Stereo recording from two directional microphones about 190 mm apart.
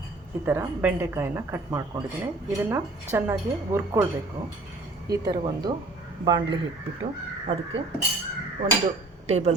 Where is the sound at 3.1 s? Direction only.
15° right (ahead or behind).